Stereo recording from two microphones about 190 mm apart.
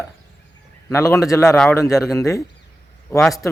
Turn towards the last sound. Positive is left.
turn(degrees=5)  # may be behind; listen again after turning